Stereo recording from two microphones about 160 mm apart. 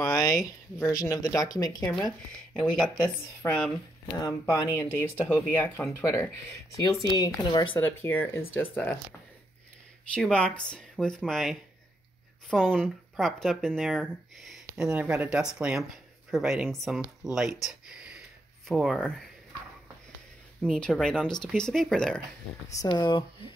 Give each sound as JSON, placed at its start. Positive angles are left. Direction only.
{"t": 0.0, "sound": "speech", "side_deg": 25}
{"t": 2.0, "sound": "speech", "side_deg": 5}
{"t": 4.2, "sound": "speech", "side_deg": 20}
{"t": 6.8, "sound": "speech", "side_deg": 20}
{"t": 7.8, "sound": "speech", "side_deg": 15}
{"t": 10.1, "sound": "speech", "side_deg": 5}
{"t": 20.6, "sound": "speech", "side_deg": 5}
{"t": 22.7, "sound": "speech", "side_deg": 20}